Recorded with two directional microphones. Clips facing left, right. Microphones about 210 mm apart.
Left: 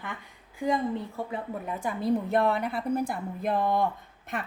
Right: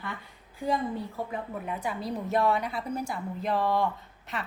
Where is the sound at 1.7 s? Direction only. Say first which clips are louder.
Left 8 dB; 50° left (ahead or behind).